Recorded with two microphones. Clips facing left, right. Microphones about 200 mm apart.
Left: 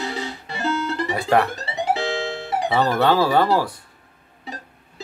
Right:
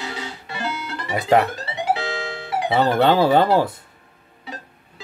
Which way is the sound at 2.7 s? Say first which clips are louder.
Right 2 dB; 25° right (ahead or behind).